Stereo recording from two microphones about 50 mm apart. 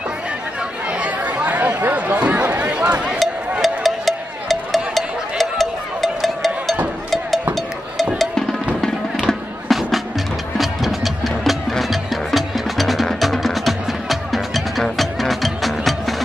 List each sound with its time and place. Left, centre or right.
1.4 s chatter: right
2.1 s a sound: right
3.6 s music: centre
8.8 s music: centre
9.7 s music: centre